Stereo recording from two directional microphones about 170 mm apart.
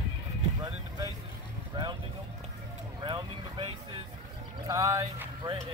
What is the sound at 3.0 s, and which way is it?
Speech, 30° right (ahead or behind).